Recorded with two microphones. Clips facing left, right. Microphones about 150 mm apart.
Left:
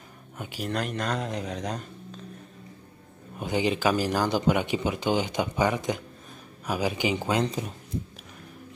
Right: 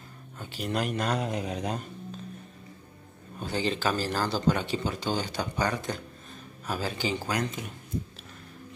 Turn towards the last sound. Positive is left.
turn(degrees=35)  # may be behind; listen again after turning